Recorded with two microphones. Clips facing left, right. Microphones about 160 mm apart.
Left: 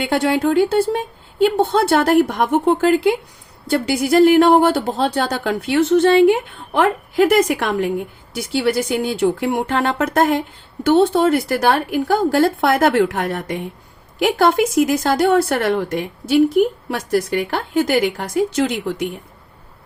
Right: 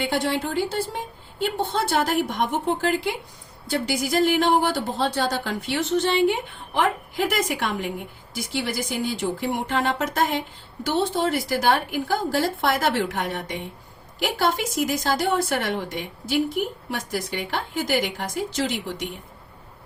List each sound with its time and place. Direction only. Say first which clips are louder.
0.0 s a woman's voice: left 7 dB; 65° left (ahead or behind)
17.1 s a woman's voice: left 11 dB; 60° left (ahead or behind)